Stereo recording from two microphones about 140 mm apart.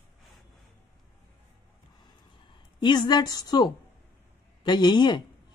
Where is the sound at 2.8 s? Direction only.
30° left (ahead or behind).